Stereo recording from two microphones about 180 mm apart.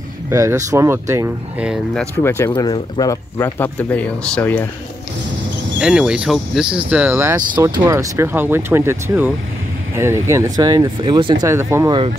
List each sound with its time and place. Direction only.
0.3 s speech: 15° right (ahead or behind)
2.0 s speech: 15° left (ahead or behind)
5.8 s speech: 5° right (ahead or behind)
7.3 s speech: 25° right (ahead or behind)